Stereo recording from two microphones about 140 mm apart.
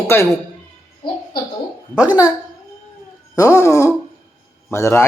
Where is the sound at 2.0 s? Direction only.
10° right (ahead or behind).